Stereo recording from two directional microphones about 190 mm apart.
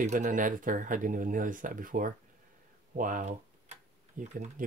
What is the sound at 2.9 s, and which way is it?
Typing, 45° right (ahead or behind).